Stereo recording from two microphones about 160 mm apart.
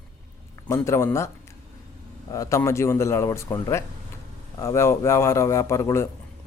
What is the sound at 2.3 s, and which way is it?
Speech, 20° left (ahead or behind).